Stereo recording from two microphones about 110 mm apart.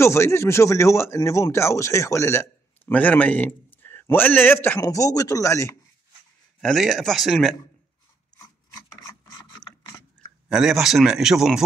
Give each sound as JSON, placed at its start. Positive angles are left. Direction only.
{"t": 0.0, "sound": "speech", "side_deg": 25}
{"t": 2.9, "sound": "a man's voice", "side_deg": 15}
{"t": 4.7, "sound": "speech", "side_deg": 30}
{"t": 6.6, "sound": "speech", "side_deg": 0}
{"t": 8.6, "sound": "filing", "side_deg": 30}
{"t": 10.5, "sound": "speech", "side_deg": -5}